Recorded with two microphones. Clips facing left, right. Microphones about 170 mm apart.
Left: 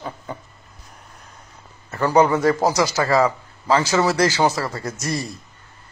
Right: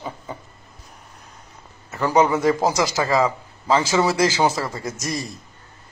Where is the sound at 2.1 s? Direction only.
15° right (ahead or behind).